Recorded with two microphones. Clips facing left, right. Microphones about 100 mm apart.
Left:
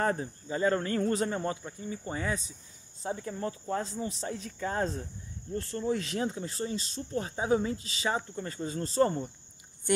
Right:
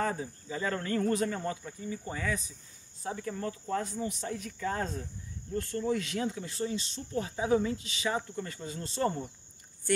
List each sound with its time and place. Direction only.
0.0 s speech: 45° left (ahead or behind)
9.9 s speech: 15° left (ahead or behind)